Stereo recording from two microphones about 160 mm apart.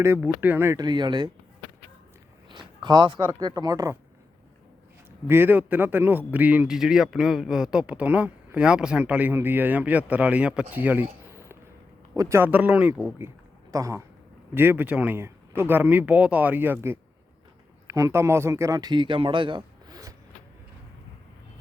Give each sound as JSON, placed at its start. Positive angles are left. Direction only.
{"t": 0.0, "sound": "speech", "side_deg": -15}
{"t": 0.9, "sound": "speech", "side_deg": -30}
{"t": 2.5, "sound": "speech", "side_deg": -25}
{"t": 5.3, "sound": "speech", "side_deg": -10}
{"t": 12.1, "sound": "speech", "side_deg": -20}